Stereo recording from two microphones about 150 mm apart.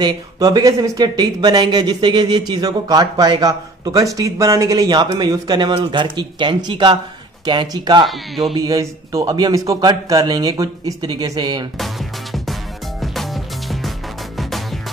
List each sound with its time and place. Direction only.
0.0 s speech: 25° right (ahead or behind)
13.0 s music: centre (ahead or behind)